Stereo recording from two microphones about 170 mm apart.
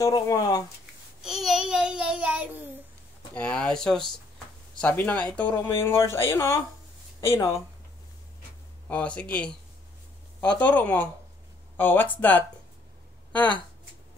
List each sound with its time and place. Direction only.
0.0 s speech: 20° left (ahead or behind)
1.2 s child singing: centre (ahead or behind)
3.3 s speech: 5° left (ahead or behind)
8.8 s speech: 10° left (ahead or behind)
10.6 s speech: 10° left (ahead or behind)